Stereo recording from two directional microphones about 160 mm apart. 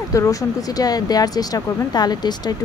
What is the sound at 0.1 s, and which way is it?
Speech, 20° left (ahead or behind).